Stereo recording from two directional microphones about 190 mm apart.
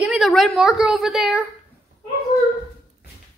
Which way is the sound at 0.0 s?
5° right (ahead or behind).